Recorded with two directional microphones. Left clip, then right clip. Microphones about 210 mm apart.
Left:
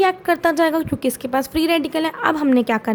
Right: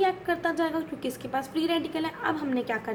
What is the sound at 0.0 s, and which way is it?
A woman's voice, 50° left (ahead or behind).